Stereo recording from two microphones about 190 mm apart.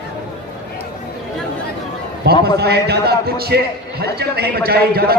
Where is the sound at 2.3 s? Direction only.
55° right (ahead or behind).